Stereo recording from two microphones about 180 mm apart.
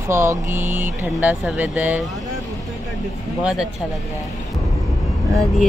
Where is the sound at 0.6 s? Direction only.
45° right (ahead or behind).